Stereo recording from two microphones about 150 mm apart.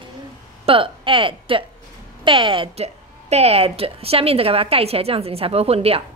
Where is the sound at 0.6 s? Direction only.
35° right (ahead or behind).